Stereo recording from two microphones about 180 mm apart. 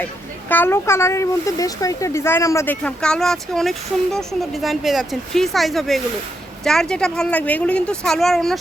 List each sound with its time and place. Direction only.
0.0 s speech: 10° left (ahead or behind)